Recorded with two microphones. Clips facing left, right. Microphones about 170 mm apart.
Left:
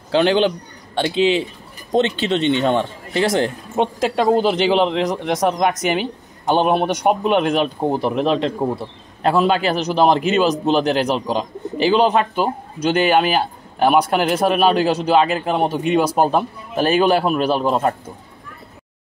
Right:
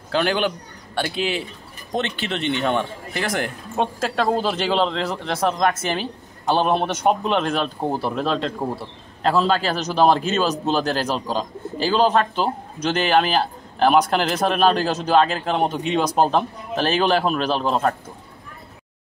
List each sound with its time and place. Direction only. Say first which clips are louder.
0.1 s a man's voice: left 6 dB; 25° left (ahead or behind)